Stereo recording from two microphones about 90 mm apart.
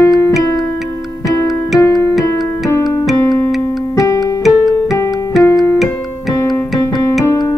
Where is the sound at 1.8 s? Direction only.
35° left (ahead or behind).